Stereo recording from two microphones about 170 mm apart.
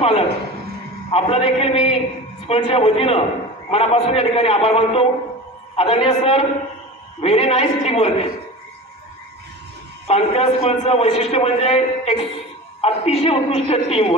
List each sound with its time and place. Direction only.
0.0 s a man's voice: 35° left (ahead or behind)
10.0 s a man's voice: 35° left (ahead or behind)